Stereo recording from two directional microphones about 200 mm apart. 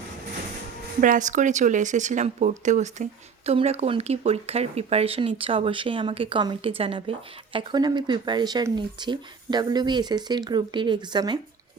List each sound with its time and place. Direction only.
1.0 s speech: 40° right (ahead or behind); by 11.3 s 20° right (ahead or behind)